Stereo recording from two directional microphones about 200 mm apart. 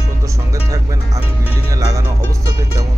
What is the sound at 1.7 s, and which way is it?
Music, 15° right (ahead or behind).